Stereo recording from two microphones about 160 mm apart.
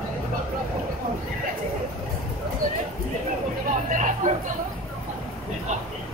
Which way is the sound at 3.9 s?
50° right (ahead or behind).